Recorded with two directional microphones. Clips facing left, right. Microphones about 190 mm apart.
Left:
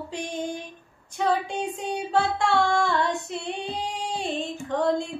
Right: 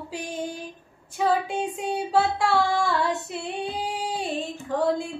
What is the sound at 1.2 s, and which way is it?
Female singing, 5° right (ahead or behind).